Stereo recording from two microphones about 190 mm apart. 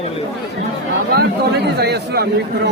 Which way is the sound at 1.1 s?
60° right (ahead or behind).